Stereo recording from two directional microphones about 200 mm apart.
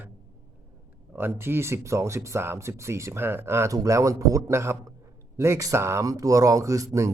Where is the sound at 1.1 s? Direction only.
10° right (ahead or behind).